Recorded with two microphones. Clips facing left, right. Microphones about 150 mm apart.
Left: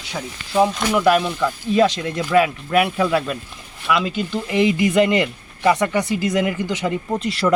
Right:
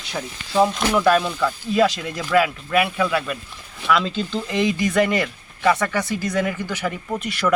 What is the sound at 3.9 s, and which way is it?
Speech, 10° left (ahead or behind).